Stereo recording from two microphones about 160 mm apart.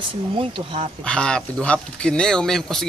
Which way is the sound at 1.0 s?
5° left (ahead or behind).